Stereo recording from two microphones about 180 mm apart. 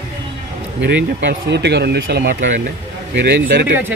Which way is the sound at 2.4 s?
45° right (ahead or behind).